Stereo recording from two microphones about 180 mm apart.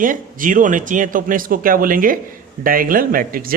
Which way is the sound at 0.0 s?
50° right (ahead or behind).